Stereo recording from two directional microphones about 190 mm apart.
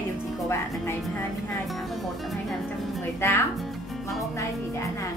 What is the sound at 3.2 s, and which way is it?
Speech, 15° left (ahead or behind).